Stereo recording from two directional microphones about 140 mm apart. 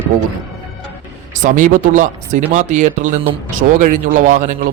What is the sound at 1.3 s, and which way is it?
Speech, 65° right (ahead or behind).